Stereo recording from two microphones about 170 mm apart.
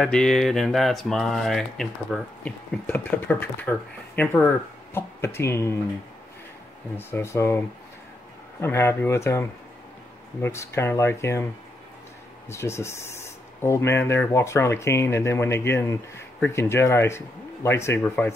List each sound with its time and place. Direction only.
0.0 s speech: 5° left (ahead or behind)
7.0 s speech: 15° left (ahead or behind)
12.4 s speech: 15° left (ahead or behind)